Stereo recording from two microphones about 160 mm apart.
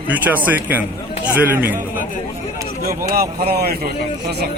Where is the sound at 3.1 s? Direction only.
75° right (ahead or behind).